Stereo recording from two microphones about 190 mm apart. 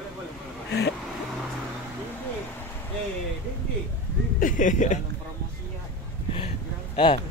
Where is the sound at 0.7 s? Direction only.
65° left (ahead or behind).